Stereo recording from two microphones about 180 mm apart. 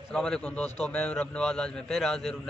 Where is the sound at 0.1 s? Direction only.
5° left (ahead or behind).